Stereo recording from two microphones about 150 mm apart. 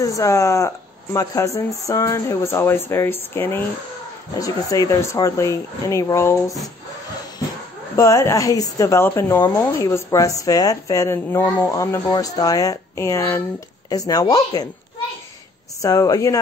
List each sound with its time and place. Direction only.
0.0 s speech: 20° left (ahead or behind)
7.9 s speech: 20° left (ahead or behind)
15.8 s speech: 25° left (ahead or behind)